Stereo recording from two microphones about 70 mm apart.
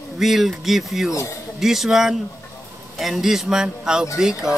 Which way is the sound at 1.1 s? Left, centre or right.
Left.